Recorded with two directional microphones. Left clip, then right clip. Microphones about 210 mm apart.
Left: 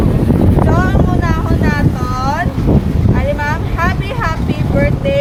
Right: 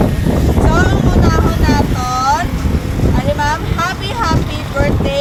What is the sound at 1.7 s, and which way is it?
Boat, 15° left (ahead or behind).